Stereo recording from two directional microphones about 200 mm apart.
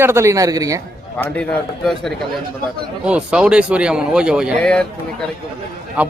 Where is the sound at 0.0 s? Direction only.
15° right (ahead or behind).